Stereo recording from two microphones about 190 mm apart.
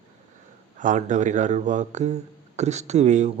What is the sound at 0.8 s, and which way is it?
Speech, 40° right (ahead or behind).